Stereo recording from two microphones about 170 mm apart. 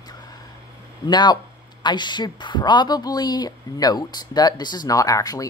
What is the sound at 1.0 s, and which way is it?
Speech, 25° left (ahead or behind).